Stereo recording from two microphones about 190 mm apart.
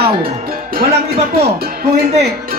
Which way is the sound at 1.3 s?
55° right (ahead or behind).